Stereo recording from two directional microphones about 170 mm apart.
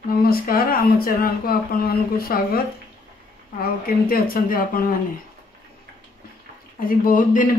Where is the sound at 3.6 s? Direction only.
60° left (ahead or behind).